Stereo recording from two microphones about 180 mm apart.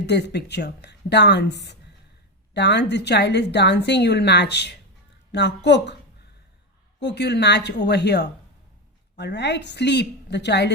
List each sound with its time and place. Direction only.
0.0 s a woman's voice: 70° left (ahead or behind)
7.0 s a woman's voice: 70° left (ahead or behind)